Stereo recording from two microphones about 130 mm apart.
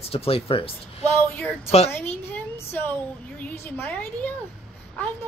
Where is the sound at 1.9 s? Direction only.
15° left (ahead or behind).